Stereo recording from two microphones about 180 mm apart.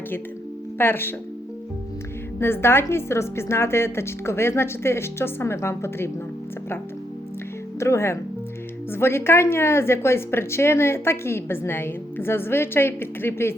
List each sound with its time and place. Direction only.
0.8 s a woman's voice: 10° left (ahead or behind)
2.4 s a woman's voice: 15° left (ahead or behind)
7.8 s a woman's voice: 15° left (ahead or behind)